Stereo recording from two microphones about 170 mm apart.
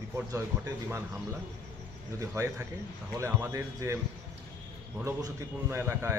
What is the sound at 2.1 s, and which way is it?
Speech, 15° right (ahead or behind).